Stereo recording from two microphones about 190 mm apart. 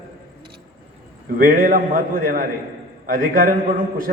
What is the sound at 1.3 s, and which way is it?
A man's voice, 45° right (ahead or behind).